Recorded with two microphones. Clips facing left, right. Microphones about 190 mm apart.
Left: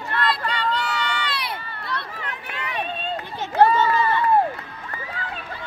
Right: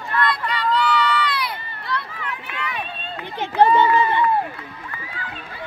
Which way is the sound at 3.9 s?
15° right (ahead or behind).